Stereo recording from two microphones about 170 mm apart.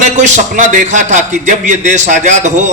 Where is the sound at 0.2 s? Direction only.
45° right (ahead or behind).